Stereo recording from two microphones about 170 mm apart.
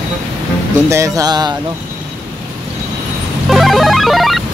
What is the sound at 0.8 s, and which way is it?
Speech, 20° right (ahead or behind).